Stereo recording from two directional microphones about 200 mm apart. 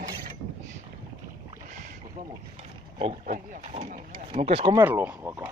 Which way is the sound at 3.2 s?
40° right (ahead or behind).